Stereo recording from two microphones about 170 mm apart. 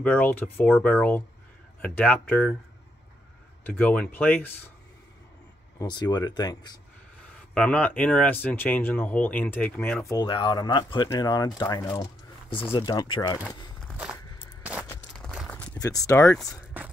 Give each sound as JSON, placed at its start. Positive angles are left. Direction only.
{"t": 0.0, "sound": "speech", "side_deg": 10}
{"t": 3.6, "sound": "speech", "side_deg": 10}
{"t": 5.8, "sound": "speech", "side_deg": 25}
{"t": 7.5, "sound": "speech", "side_deg": 5}
{"t": 10.0, "sound": "speech", "side_deg": 25}
{"t": 14.6, "sound": "a sound", "side_deg": -10}
{"t": 15.1, "sound": "a sound", "side_deg": 5}
{"t": 15.9, "sound": "speech", "side_deg": 20}
{"t": 16.6, "sound": "whispering", "side_deg": -10}